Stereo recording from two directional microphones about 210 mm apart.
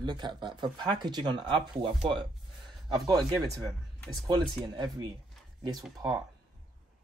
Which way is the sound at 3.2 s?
Centre (ahead or behind).